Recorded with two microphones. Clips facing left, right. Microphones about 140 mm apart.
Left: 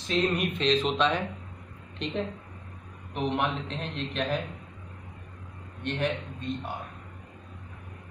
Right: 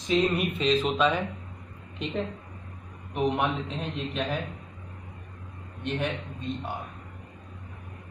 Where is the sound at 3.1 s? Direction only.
5° right (ahead or behind).